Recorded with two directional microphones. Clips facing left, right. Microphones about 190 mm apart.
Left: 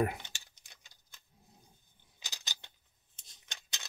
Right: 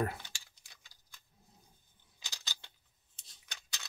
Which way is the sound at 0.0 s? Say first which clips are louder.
Left 3 dB; 20° left (ahead or behind).